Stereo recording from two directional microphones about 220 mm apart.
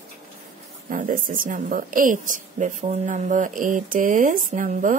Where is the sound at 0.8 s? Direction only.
35° right (ahead or behind).